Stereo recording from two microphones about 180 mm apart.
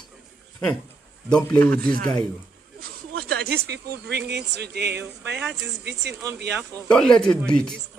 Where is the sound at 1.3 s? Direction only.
5° left (ahead or behind).